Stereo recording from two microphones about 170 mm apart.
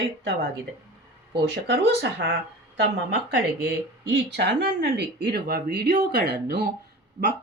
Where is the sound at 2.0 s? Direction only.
90° right.